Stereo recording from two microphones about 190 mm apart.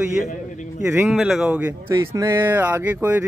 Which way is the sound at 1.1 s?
Centre (ahead or behind).